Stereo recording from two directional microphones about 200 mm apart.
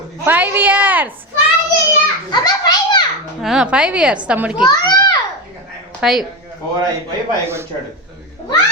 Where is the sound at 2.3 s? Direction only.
20° left (ahead or behind).